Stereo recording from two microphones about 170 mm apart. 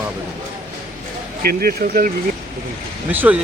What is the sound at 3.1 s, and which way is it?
Speech, 10° right (ahead or behind).